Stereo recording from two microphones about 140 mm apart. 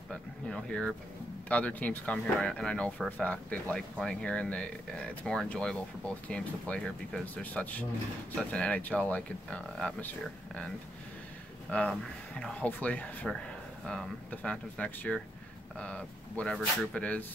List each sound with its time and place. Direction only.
0.1 s speech: 5° left (ahead or behind)
11.7 s speech: 10° left (ahead or behind)